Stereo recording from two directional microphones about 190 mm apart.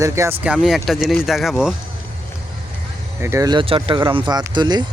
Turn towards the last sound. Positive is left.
turn(degrees=-25)  # may be behind; listen again after turning